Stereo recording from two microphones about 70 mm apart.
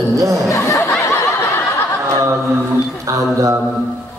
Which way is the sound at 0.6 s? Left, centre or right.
Left.